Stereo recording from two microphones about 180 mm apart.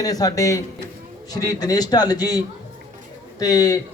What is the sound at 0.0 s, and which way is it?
A man's voice, 20° left (ahead or behind).